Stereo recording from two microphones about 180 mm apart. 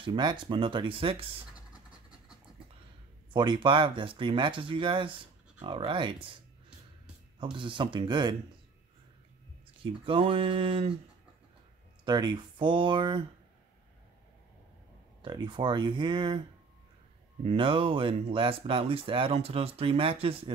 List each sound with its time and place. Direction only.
0.0 s speech: 25° right (ahead or behind)
3.3 s speech: 25° right (ahead or behind)
7.5 s speech: 25° right (ahead or behind)
10.0 s speech: 30° right (ahead or behind)
12.0 s speech: 25° right (ahead or behind)
15.2 s speech: 25° right (ahead or behind)
17.4 s speech: 30° right (ahead or behind)